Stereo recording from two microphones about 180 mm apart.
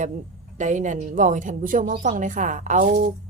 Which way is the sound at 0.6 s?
45° right (ahead or behind).